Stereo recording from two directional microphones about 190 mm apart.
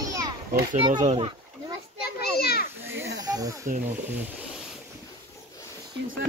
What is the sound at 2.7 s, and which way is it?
Children playing, 10° right (ahead or behind).